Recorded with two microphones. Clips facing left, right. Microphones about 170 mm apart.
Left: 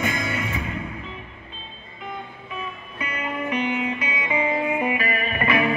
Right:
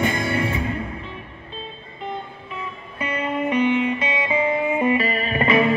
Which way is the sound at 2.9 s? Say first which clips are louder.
Right 5 dB; 30° right (ahead or behind).